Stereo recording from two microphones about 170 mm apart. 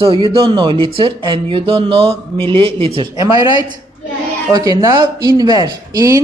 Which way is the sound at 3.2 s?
20° right (ahead or behind).